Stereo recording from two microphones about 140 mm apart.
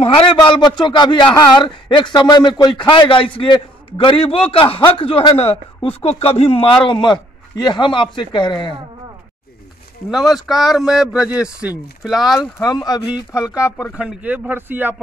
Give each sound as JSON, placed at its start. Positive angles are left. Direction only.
{"t": 0.0, "sound": "speech", "side_deg": 40}
{"t": 10.1, "sound": "speech", "side_deg": 0}
{"t": 12.4, "sound": "speech", "side_deg": 30}
{"t": 13.9, "sound": "speech", "side_deg": -10}